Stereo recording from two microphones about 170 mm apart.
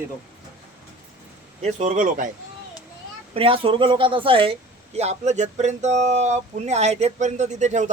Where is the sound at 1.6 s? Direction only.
45° right (ahead or behind).